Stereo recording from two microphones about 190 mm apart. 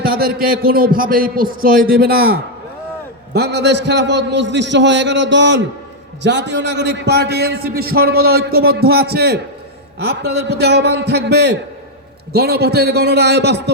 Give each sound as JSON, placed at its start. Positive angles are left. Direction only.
{"t": 0.0, "sound": "a man's voice", "side_deg": -50}